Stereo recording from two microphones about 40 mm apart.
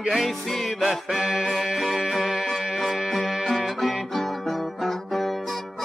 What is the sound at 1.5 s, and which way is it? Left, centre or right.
Music, centre.